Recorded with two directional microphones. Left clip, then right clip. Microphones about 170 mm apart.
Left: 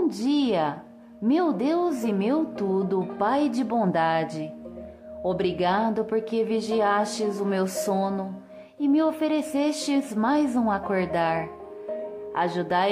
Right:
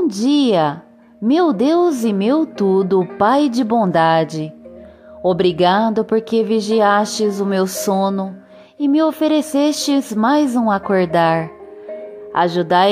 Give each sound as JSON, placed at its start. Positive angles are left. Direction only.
{"t": 0.1, "sound": "a woman's voice", "side_deg": -35}